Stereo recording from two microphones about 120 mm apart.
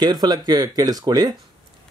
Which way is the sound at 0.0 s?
35° right (ahead or behind).